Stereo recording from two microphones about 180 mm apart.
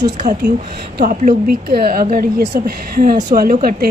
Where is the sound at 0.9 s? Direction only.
55° right (ahead or behind).